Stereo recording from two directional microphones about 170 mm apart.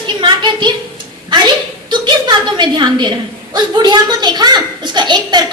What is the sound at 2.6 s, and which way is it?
A woman's voice, 25° right (ahead or behind).